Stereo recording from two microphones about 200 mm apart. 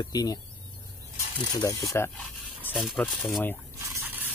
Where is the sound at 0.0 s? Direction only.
20° left (ahead or behind).